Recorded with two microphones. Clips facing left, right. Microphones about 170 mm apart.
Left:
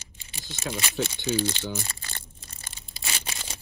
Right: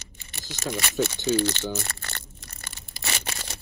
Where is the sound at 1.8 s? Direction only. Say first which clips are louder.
Right 3 dB; 65° right (ahead or behind).